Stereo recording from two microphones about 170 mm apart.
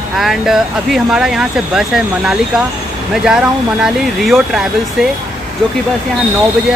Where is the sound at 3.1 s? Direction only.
5° right (ahead or behind).